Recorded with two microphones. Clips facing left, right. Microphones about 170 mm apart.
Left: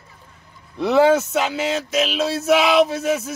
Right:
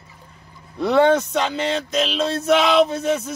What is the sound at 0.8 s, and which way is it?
Speech, centre (ahead or behind).